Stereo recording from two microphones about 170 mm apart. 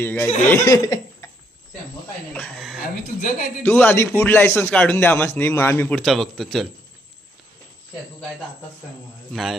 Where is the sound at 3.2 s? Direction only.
55° left (ahead or behind).